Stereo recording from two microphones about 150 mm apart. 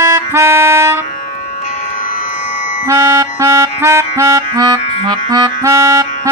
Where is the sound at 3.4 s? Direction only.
20° right (ahead or behind).